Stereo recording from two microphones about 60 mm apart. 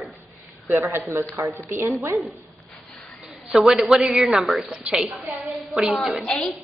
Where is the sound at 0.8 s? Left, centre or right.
Right.